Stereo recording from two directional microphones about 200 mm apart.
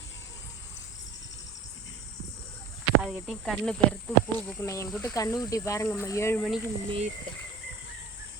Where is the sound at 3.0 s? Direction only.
Centre (ahead or behind).